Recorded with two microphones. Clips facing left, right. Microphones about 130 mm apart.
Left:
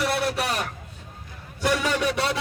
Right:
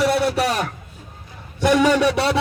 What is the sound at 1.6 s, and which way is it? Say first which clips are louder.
Speech: right 8 dB; 80° right.